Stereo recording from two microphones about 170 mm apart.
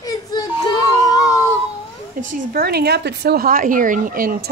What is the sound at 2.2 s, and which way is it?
A woman's voice, 65° right (ahead or behind).